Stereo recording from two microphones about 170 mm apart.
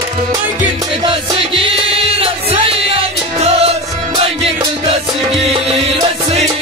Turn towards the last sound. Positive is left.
turn(degrees=-35)  # may be behind; listen again after turning